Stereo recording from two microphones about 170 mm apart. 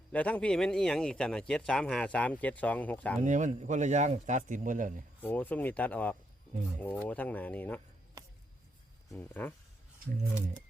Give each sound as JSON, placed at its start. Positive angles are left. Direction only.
{"t": 0.1, "sound": "speech", "side_deg": 10}
{"t": 3.2, "sound": "speech", "side_deg": -45}
{"t": 5.2, "sound": "speech", "side_deg": 10}
{"t": 9.0, "sound": "speech", "side_deg": 10}